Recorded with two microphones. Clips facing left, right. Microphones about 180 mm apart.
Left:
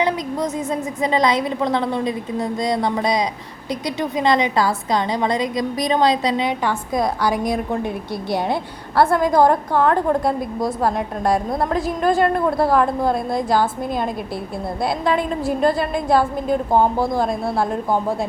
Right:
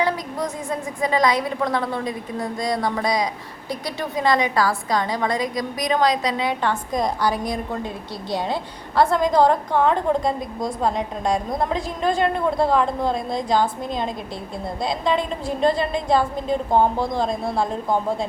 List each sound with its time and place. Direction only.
0.0 s a woman's voice: 20° left (ahead or behind)
6.7 s a woman's voice: 5° left (ahead or behind)
9.0 s a woman's voice: 10° left (ahead or behind)
14.8 s a woman's voice: 5° left (ahead or behind)